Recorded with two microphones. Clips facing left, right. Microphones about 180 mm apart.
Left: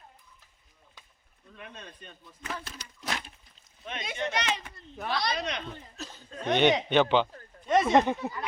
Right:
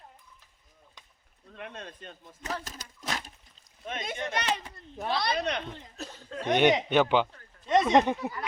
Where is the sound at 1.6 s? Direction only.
80° right.